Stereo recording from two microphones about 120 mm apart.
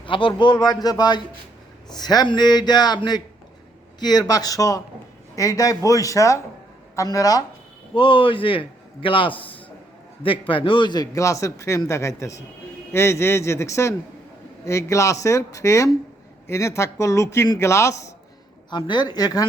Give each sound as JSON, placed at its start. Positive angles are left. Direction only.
{"t": 0.0, "sound": "a man's voice", "side_deg": 45}
{"t": 7.9, "sound": "a man's voice", "side_deg": 45}
{"t": 18.7, "sound": "a man's voice", "side_deg": 40}